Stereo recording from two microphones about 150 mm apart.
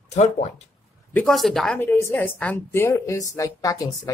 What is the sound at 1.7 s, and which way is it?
A woman's voice, 15° left (ahead or behind).